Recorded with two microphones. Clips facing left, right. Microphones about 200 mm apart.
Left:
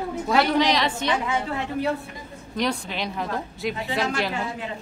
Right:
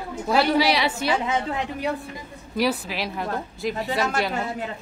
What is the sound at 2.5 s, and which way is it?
A woman's voice, 5° right (ahead or behind).